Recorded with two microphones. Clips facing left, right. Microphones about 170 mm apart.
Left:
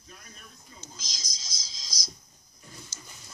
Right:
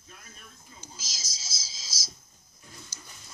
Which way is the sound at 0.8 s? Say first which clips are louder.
Even; 5° right (ahead or behind).